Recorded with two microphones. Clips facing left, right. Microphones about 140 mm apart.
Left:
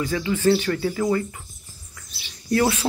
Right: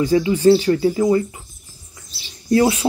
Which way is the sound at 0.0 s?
20° right (ahead or behind).